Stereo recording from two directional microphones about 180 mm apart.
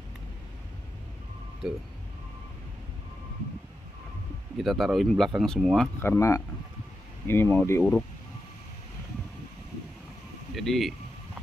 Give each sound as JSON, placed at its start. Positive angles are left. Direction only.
{"t": 1.6, "sound": "speech", "side_deg": -5}
{"t": 4.6, "sound": "speech", "side_deg": 0}
{"t": 5.9, "sound": "speech", "side_deg": 15}
{"t": 10.5, "sound": "speech", "side_deg": 0}